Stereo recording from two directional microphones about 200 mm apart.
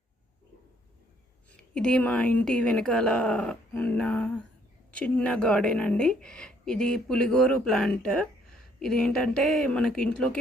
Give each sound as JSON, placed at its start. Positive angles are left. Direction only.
{"t": 1.7, "sound": "speech", "side_deg": 5}